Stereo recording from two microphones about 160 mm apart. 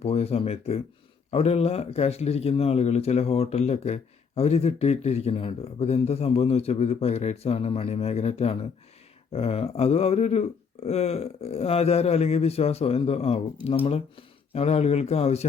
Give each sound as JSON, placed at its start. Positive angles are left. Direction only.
{"t": 0.0, "sound": "speech", "side_deg": 40}